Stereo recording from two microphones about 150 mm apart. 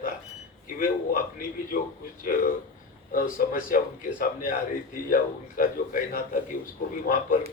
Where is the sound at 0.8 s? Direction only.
75° left (ahead or behind).